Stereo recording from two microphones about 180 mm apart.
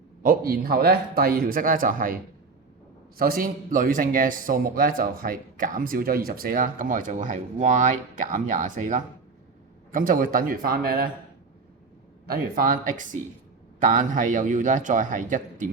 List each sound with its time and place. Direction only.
0.2 s a man's voice: 55° right (ahead or behind)
3.2 s a man's voice: 55° right (ahead or behind)
12.3 s a man's voice: 50° right (ahead or behind)